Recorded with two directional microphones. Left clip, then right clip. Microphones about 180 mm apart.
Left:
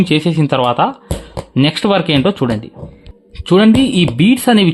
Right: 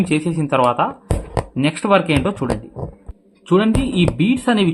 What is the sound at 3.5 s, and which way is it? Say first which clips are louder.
Speech: left 6 dB; 40° left (ahead or behind).